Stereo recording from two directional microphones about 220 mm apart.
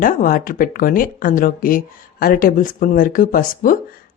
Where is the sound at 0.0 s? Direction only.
40° left (ahead or behind).